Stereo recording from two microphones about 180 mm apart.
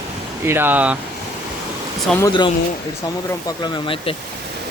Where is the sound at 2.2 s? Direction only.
25° left (ahead or behind).